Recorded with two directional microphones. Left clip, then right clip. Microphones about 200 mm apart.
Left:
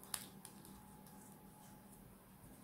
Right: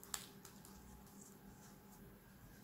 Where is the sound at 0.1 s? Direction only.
Centre (ahead or behind).